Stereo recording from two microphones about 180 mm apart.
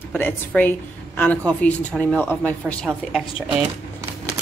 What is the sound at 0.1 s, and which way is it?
A woman's voice, 10° left (ahead or behind).